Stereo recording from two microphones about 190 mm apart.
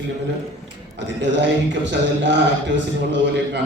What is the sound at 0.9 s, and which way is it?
A man's voice, 70° right (ahead or behind).